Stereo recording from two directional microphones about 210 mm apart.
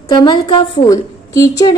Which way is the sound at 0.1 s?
20° left (ahead or behind).